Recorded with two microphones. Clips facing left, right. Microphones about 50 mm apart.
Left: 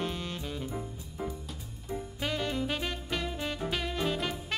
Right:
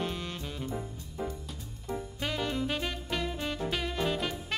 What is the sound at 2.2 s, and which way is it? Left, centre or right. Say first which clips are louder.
Music: left 1 dB; centre.